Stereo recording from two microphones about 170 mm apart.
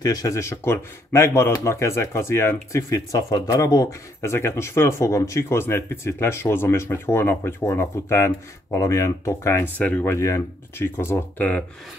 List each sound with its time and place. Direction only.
0.0 s speech: 20° left (ahead or behind)